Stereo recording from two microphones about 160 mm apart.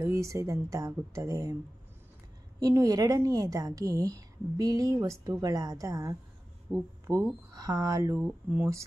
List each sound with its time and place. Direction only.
0.0 s a woman's voice: 20° right (ahead or behind)
2.6 s a woman's voice: 20° right (ahead or behind)